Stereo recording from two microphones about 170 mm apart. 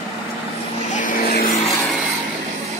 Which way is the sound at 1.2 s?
60° left (ahead or behind).